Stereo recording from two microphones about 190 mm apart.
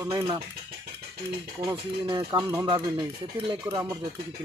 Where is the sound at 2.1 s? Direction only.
20° right (ahead or behind).